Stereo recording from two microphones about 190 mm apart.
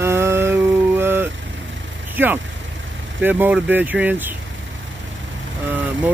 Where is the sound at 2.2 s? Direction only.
10° right (ahead or behind).